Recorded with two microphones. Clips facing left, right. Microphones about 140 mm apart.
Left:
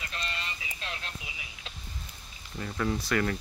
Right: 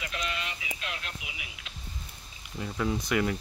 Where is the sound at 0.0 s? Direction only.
90° right.